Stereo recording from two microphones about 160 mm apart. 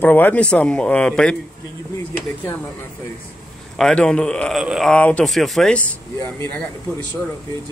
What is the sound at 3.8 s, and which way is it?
A man's voice, 5° left (ahead or behind).